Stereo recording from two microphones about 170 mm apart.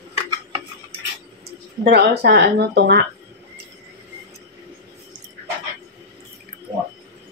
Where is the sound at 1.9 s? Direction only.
75° right (ahead or behind).